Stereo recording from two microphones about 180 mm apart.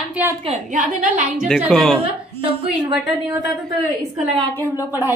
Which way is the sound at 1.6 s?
Centre (ahead or behind).